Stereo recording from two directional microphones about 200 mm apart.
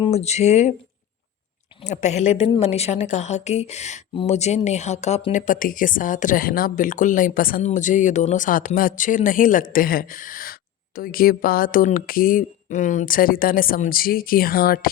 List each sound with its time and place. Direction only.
0.0 s a woman's voice: 30° left (ahead or behind)
1.8 s a woman's voice: 35° left (ahead or behind)